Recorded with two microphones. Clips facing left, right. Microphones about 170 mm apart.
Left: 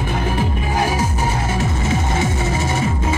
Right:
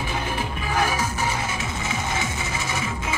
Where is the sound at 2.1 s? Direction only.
35° left (ahead or behind).